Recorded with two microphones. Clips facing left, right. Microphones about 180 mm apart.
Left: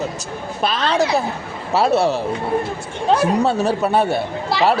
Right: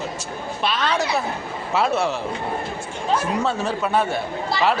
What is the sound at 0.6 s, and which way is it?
Speech, 35° left (ahead or behind).